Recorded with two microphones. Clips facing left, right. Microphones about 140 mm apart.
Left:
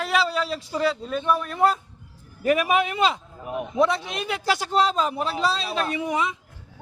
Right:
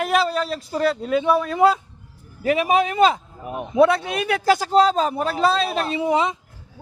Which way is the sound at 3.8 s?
60° right (ahead or behind).